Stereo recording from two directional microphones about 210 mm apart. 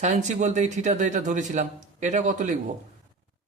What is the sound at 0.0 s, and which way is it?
A man's voice, 35° right (ahead or behind).